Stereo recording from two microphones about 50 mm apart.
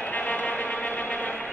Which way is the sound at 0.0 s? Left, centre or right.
Left.